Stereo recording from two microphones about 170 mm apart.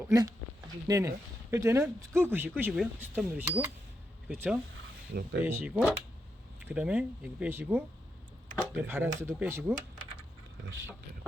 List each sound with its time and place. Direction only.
0.1 s speech: 20° right (ahead or behind)
5.1 s speech: 70° right (ahead or behind)
5.5 s speech: 10° right (ahead or behind)